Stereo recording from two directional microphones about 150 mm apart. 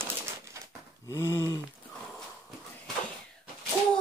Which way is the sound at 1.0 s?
20° left (ahead or behind).